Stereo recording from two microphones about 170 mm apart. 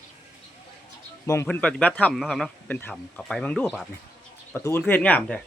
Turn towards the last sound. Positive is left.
turn(degrees=10)  # may be behind; listen again after turning